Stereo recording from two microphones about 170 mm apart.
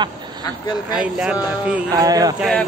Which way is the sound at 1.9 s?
20° right (ahead or behind).